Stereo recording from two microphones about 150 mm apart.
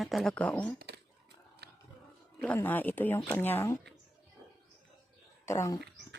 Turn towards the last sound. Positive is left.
turn(degrees=20)  # may be behind; listen again after turning